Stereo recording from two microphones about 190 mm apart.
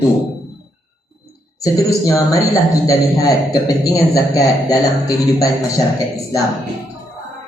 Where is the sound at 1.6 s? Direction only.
15° left (ahead or behind).